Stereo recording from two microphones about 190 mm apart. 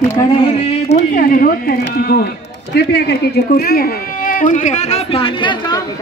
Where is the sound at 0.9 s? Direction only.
45° left (ahead or behind); by 5.8 s 25° left (ahead or behind).